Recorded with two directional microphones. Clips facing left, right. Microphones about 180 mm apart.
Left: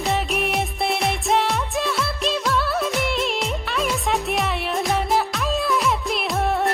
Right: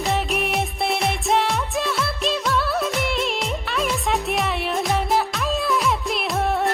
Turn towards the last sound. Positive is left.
turn(degrees=0)  # may be behind; listen again after turning